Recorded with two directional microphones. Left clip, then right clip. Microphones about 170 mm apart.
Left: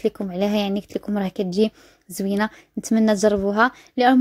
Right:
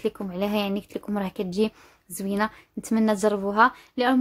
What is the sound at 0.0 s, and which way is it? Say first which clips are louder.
A woman's voice: left 5 dB; 25° left (ahead or behind).